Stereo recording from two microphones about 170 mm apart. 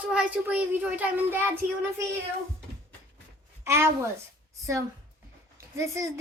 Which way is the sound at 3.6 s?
15° right (ahead or behind).